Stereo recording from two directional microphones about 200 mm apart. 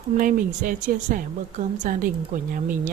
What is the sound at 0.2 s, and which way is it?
A woman's voice, 40° right (ahead or behind).